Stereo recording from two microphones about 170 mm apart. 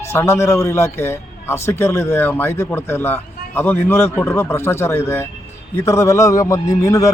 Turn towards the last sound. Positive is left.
turn(degrees=20)  # may be behind; listen again after turning